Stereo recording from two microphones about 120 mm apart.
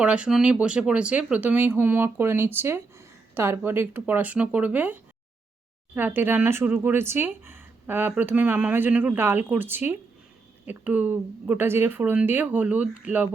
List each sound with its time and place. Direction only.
0.0 s speech: 10° right (ahead or behind)